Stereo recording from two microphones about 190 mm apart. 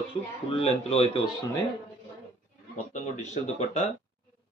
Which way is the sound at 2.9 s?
35° left (ahead or behind).